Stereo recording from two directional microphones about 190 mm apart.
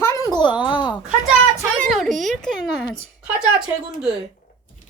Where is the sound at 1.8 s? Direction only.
Centre (ahead or behind).